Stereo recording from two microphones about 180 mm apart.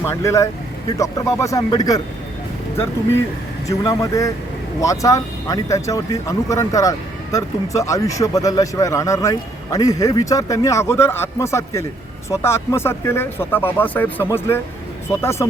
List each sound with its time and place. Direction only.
0.0 s speech: 15° left (ahead or behind)
3.7 s speech: 20° left (ahead or behind)